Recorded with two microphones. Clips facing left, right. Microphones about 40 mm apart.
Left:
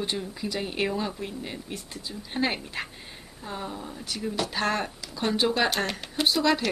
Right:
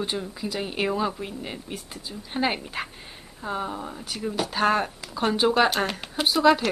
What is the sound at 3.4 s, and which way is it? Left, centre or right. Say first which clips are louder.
A woman's voice: right 5 dB; right.